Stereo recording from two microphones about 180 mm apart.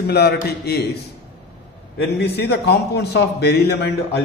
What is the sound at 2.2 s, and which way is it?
Speech, 65° left (ahead or behind).